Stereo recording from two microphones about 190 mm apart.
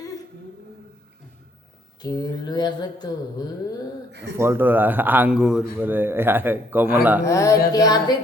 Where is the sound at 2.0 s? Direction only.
20° left (ahead or behind).